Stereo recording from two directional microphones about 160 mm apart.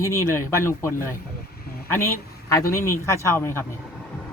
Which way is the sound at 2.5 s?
20° left (ahead or behind).